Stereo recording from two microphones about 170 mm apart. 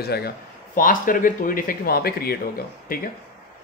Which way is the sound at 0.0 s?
65° left (ahead or behind).